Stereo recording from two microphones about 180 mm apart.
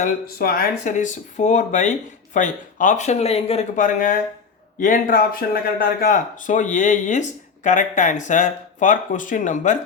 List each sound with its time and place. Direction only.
0.0 s speech: 55° left (ahead or behind)